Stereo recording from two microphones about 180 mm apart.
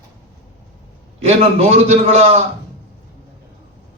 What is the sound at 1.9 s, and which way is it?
Speech, 35° right (ahead or behind).